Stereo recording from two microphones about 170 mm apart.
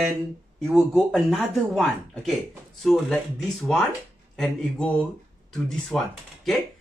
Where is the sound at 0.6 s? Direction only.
Centre (ahead or behind).